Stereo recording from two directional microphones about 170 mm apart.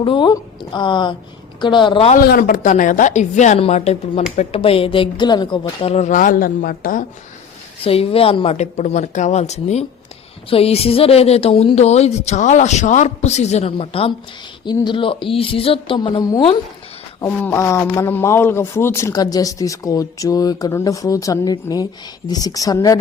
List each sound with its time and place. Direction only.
0.0 s speech: 30° left (ahead or behind)
2.1 s a woman's voice: 60° left (ahead or behind)
7.9 s speech: 35° left (ahead or behind)
17.2 s speech: 15° left (ahead or behind)